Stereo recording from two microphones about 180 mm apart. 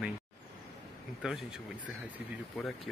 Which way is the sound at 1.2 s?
Centre (ahead or behind).